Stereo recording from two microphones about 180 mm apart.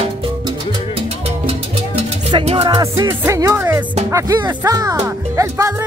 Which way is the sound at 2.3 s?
30° right (ahead or behind).